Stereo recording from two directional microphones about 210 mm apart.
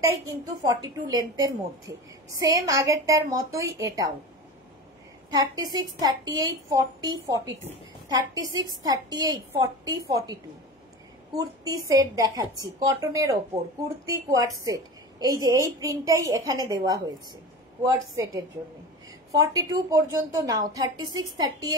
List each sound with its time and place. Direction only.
0.0 s a woman's voice: 15° right (ahead or behind)
5.3 s a woman's voice: 20° right (ahead or behind)